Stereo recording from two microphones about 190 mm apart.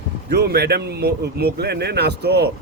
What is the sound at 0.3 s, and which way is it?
Speech, 60° right (ahead or behind).